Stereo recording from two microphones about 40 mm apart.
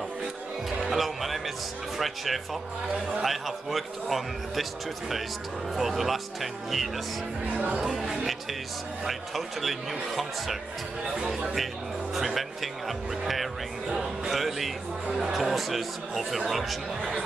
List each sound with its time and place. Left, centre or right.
0.7 s music: centre
2.0 s speech: centre
5.8 s speech: centre
11.2 s speech: centre
11.5 s speech: centre